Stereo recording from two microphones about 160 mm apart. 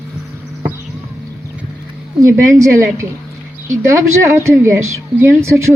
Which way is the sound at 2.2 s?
20° right (ahead or behind).